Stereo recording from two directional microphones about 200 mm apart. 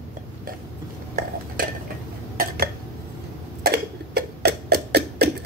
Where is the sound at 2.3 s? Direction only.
50° right (ahead or behind).